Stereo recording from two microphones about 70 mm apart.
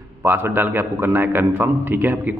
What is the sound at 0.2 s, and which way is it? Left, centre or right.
A man's voice, right.